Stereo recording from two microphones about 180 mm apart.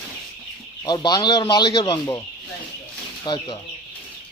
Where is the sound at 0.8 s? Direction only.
25° left (ahead or behind).